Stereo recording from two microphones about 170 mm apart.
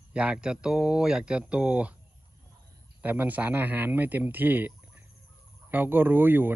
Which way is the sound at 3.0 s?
10° right (ahead or behind).